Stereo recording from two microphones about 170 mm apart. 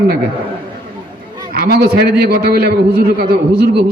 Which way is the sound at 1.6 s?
65° right (ahead or behind).